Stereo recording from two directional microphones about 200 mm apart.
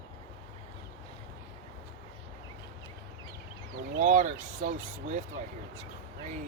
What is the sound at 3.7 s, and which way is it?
Speech, 45° right (ahead or behind).